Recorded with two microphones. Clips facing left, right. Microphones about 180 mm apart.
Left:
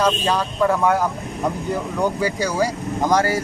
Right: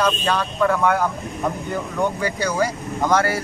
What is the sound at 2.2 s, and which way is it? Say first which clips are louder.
Speech: left 1 dB; 10° left (ahead or behind).